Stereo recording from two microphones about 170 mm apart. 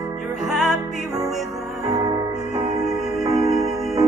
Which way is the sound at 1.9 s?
20° right (ahead or behind).